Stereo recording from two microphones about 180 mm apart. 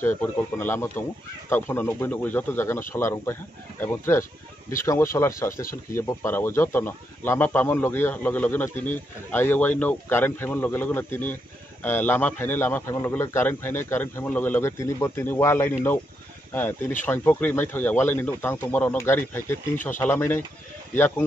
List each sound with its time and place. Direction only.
0.0 s speech: 10° left (ahead or behind)
5.5 s speech: 50° left (ahead or behind)
5.9 s speech: 15° left (ahead or behind)
17.0 s speech: 10° left (ahead or behind)